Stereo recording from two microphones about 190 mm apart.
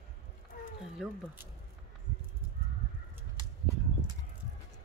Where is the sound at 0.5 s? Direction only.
45° left (ahead or behind).